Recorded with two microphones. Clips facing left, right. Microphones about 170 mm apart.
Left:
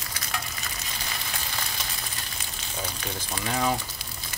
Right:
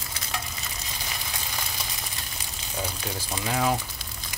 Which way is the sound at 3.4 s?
5° right (ahead or behind).